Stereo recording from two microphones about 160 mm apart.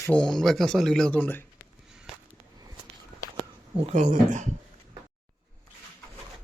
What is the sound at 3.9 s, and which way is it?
Speech, 50° right (ahead or behind).